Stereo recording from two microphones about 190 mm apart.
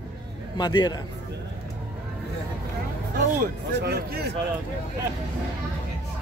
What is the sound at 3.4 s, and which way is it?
Speech, 55° right (ahead or behind).